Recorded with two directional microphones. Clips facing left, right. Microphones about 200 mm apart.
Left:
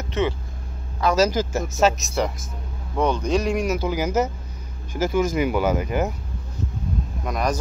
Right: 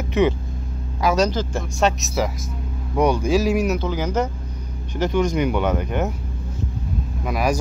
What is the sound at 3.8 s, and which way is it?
Speech, 10° left (ahead or behind).